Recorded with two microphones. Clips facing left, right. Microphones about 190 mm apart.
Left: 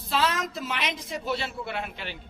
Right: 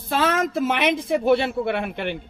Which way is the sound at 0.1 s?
50° right (ahead or behind).